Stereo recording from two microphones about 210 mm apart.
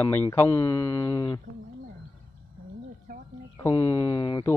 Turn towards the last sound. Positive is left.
turn(degrees=20)  # may be behind; listen again after turning